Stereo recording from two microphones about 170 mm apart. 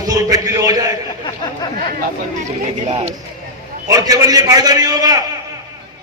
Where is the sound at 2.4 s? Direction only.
40° right (ahead or behind).